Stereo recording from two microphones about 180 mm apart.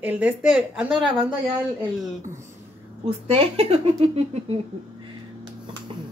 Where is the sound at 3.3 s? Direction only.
30° right (ahead or behind).